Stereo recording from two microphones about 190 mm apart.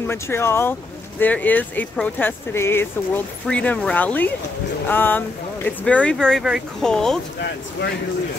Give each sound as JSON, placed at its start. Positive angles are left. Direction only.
{"t": 0.0, "sound": "speech", "side_deg": 15}
{"t": 7.3, "sound": "speech", "side_deg": 60}